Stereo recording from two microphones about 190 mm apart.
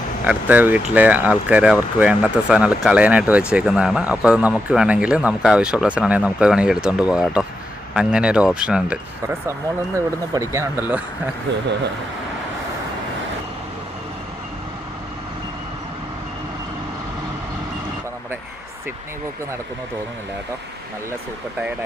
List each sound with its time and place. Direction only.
0.3 s speech: 10° right (ahead or behind)
10.3 s speech: 15° right (ahead or behind)